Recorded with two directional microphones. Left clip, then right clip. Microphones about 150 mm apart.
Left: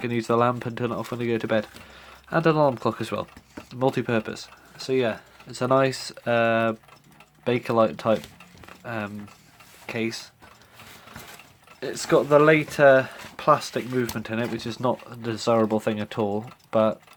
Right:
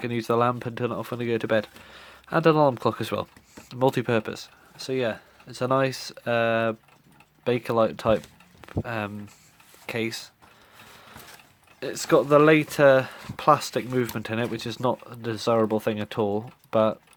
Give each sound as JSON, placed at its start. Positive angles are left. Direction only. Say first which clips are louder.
{"t": 0.0, "sound": "speech", "louder": "left 1 dB", "side_deg": -30}
{"t": 8.6, "sound": "speech", "louder": "right 2 dB", "side_deg": -45}
{"t": 11.8, "sound": "speech", "louder": "even", "side_deg": -50}